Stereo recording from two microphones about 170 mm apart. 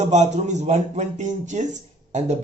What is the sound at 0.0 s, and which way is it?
Speech, 40° right (ahead or behind).